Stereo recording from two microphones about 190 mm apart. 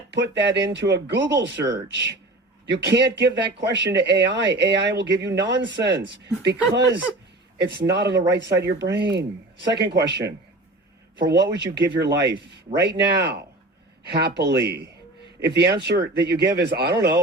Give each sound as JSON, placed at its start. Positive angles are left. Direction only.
{"t": 0.1, "sound": "speech", "side_deg": -65}